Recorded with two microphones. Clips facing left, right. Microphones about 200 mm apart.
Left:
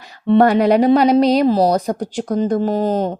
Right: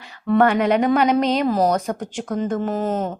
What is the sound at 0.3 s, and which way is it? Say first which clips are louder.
A woman's voice: left 4 dB; 35° left (ahead or behind).